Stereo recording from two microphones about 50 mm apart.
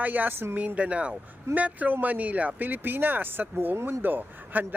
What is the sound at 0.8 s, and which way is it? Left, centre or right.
Speech, right.